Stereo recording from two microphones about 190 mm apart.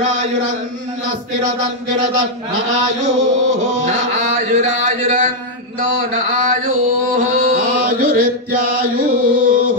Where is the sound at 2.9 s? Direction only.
40° right (ahead or behind).